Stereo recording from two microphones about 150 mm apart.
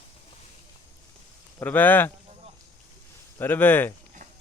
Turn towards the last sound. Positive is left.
turn(degrees=15)  # may be behind; listen again after turning